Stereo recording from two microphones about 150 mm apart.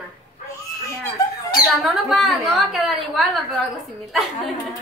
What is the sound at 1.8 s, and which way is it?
A woman's voice, centre (ahead or behind).